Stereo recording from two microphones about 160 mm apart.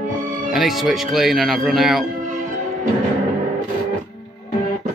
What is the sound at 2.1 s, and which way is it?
Music, 50° right (ahead or behind).